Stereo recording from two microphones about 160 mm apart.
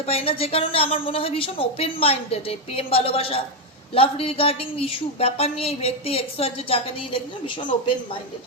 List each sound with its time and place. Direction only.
0.0 s speech: 40° left (ahead or behind)